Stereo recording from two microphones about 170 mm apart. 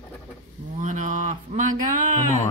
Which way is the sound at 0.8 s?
45° right (ahead or behind).